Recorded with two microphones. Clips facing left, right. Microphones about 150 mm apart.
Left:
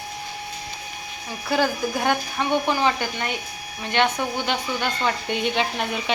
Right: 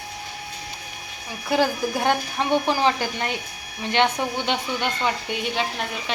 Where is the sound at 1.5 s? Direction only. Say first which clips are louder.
Right 1 dB; 25° right (ahead or behind).